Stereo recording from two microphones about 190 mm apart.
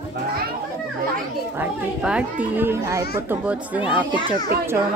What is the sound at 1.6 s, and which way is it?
Speech, 5° right (ahead or behind).